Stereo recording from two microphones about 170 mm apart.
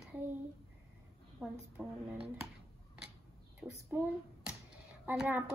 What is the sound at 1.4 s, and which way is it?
Speech, 5° right (ahead or behind).